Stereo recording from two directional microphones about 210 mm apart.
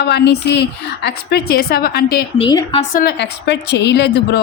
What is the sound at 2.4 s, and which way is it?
Speech, 25° left (ahead or behind).